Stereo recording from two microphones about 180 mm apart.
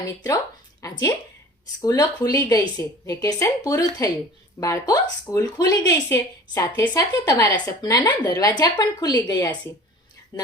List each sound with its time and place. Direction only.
0.8 s a woman's voice: 20° left (ahead or behind)